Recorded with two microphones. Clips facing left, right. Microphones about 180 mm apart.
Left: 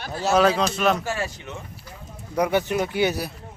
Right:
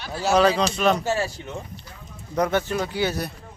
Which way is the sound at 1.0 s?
30° right (ahead or behind).